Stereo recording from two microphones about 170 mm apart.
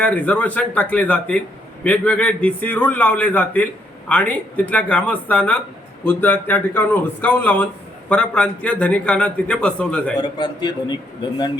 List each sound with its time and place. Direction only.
0.0 s a man's voice: 10° left (ahead or behind)
10.2 s a man's voice: 25° left (ahead or behind)